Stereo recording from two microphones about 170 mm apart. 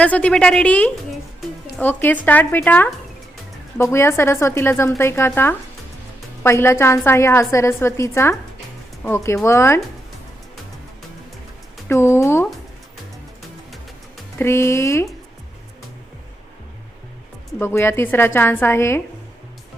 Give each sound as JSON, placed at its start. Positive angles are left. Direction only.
{"t": 0.0, "sound": "a woman's voice", "side_deg": 10}
{"t": 3.9, "sound": "a woman's voice", "side_deg": 15}
{"t": 11.9, "sound": "a woman's voice", "side_deg": 15}
{"t": 14.3, "sound": "a woman's voice", "side_deg": 15}
{"t": 17.6, "sound": "a woman's voice", "side_deg": 15}